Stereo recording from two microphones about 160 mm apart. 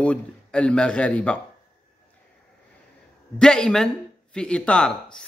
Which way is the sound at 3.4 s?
5° left (ahead or behind).